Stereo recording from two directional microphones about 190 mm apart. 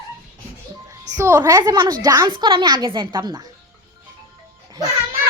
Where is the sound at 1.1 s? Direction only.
15° right (ahead or behind).